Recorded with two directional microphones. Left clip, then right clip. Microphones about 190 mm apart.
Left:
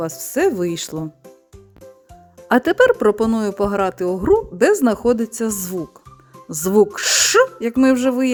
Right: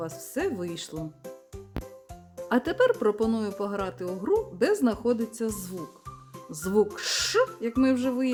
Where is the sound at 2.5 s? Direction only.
45° left (ahead or behind).